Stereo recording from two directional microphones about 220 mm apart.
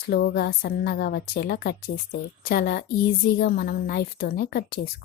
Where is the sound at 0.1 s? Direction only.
45° left (ahead or behind).